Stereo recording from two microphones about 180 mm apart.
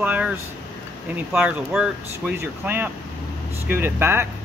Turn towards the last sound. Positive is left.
turn(degrees=-10)  # may be behind; listen again after turning